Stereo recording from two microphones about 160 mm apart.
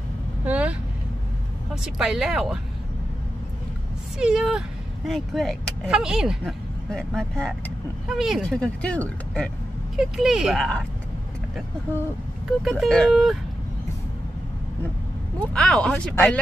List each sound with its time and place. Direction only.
0.5 s vehicle: 10° right (ahead or behind)
1.8 s speech: centre (ahead or behind)
4.2 s speech: 5° right (ahead or behind)
12.6 s speech: centre (ahead or behind)
15.3 s speech: 5° left (ahead or behind)